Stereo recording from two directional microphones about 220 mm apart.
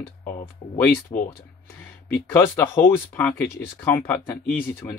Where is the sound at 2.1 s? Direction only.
10° left (ahead or behind).